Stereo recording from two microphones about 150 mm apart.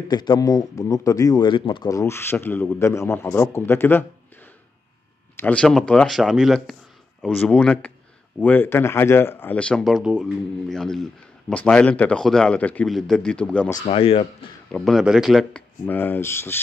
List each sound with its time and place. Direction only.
0.1 s speech: 30° left (ahead or behind)
5.3 s speech: 10° left (ahead or behind)
13.8 s speech: 40° left (ahead or behind)
14.7 s speech: centre (ahead or behind)